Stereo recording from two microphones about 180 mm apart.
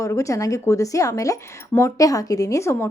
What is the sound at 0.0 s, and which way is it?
A woman's voice, 15° left (ahead or behind).